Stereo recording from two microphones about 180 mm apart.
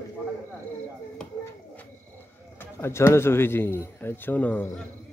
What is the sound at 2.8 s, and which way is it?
A man's voice, 15° left (ahead or behind).